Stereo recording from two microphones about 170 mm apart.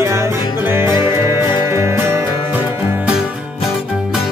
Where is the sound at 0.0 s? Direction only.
15° right (ahead or behind).